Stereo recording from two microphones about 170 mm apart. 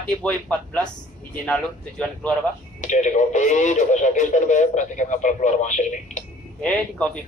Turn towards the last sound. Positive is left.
turn(degrees=5)  # may be behind; listen again after turning